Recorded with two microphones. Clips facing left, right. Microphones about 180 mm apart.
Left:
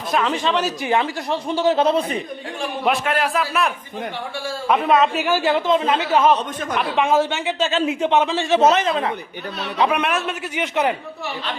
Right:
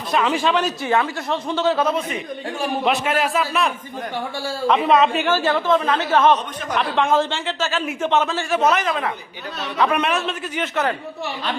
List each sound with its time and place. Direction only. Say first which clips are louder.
0.1 s a man's voice: right 1 dB; 5° right (ahead or behind)
0.6 s speech: even; 15° left (ahead or behind)
1.8 s a man's voice: left 3 dB; 30° left (ahead or behind)
2.8 s a man's voice: left 1 dB; centre (ahead or behind)
4.7 s a man's voice: even; centre (ahead or behind)
5.4 s speech: left 1 dB; 15° left (ahead or behind)
10.0 s speech: even; centre (ahead or behind)